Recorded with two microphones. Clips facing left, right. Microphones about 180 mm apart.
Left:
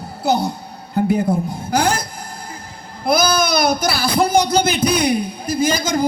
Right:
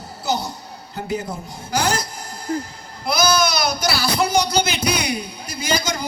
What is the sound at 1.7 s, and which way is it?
Music, 55° left (ahead or behind).